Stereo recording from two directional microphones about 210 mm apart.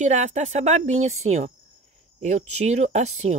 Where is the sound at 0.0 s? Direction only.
35° right (ahead or behind).